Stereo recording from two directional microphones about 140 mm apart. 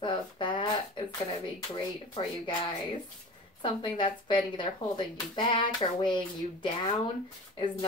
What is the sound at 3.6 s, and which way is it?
Speech, 35° left (ahead or behind).